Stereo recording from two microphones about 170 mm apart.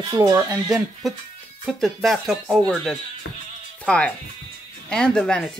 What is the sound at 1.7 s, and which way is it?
Speech, centre (ahead or behind).